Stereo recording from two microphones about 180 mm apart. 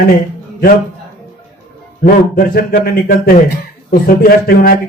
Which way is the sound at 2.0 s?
50° left (ahead or behind).